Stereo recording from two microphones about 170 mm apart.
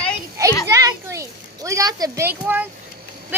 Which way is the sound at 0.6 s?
20° right (ahead or behind).